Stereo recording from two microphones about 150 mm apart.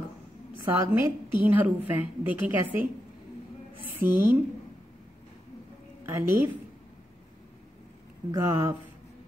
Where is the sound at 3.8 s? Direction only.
15° right (ahead or behind).